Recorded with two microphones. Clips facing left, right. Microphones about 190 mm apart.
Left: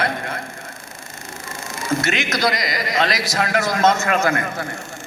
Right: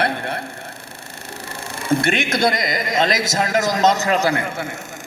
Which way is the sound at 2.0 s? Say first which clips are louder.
Right 3 dB; 55° right (ahead or behind).